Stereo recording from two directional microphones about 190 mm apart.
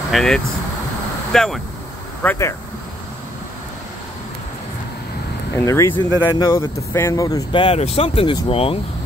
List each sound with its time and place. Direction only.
0.1 s speech: centre (ahead or behind)
2.2 s speech: 15° left (ahead or behind)
5.6 s speech: 15° left (ahead or behind); by 8.7 s 30° left (ahead or behind)